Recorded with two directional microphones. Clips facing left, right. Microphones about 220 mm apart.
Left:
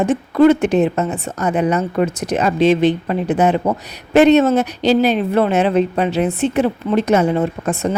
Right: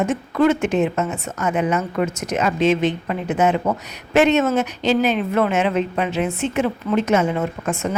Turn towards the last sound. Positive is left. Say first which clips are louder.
# left 4 dB
turn(degrees=35)  # may be behind; listen again after turning